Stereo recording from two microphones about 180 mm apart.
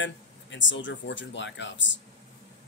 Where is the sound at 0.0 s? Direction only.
90° left.